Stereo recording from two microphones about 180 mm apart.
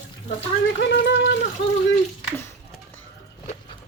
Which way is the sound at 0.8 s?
70° left (ahead or behind).